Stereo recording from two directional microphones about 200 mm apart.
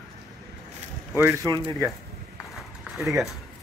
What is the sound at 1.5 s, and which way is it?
Speech, 25° right (ahead or behind).